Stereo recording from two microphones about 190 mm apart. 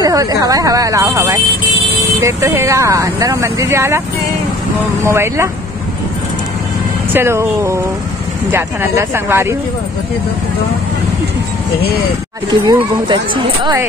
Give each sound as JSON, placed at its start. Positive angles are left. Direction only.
{"t": 0.0, "sound": "speech", "side_deg": -20}
{"t": 5.0, "sound": "speech", "side_deg": -15}
{"t": 7.1, "sound": "speech", "side_deg": -10}
{"t": 12.4, "sound": "speech", "side_deg": -25}